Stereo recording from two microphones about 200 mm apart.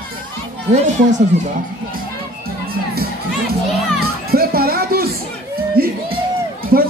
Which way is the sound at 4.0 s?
50° right (ahead or behind).